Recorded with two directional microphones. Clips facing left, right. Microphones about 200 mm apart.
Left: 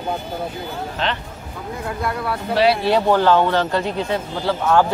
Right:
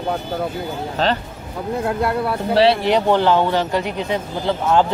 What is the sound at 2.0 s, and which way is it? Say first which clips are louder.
A man's voice: right 3 dB; 30° right (ahead or behind).